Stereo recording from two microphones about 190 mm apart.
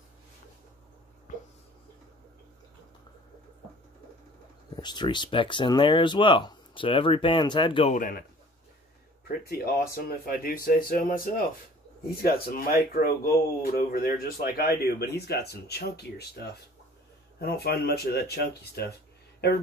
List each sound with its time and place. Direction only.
4.7 s speech: 25° left (ahead or behind)
7.9 s speech: 45° left (ahead or behind)
9.3 s speech: 55° left (ahead or behind)